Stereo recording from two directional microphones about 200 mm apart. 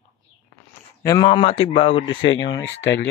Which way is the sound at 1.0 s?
20° left (ahead or behind).